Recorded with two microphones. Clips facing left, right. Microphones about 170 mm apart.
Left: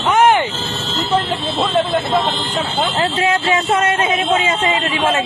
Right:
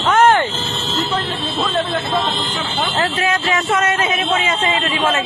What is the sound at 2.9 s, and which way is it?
Speech, 30° left (ahead or behind).